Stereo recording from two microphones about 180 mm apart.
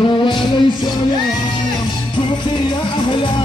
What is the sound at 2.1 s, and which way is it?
A man's voice, 25° left (ahead or behind).